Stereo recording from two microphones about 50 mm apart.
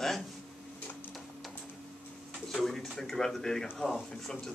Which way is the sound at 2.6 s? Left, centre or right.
Centre.